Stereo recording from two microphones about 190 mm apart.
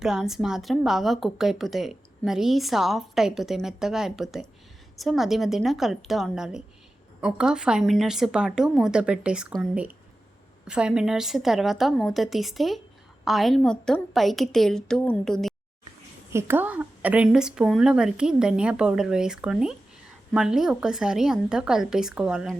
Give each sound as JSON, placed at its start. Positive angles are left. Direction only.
{"t": 0.0, "sound": "a woman's voice", "side_deg": 0}
{"t": 16.3, "sound": "a woman's voice", "side_deg": -10}